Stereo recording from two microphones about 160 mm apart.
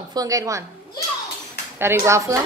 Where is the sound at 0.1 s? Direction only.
20° right (ahead or behind).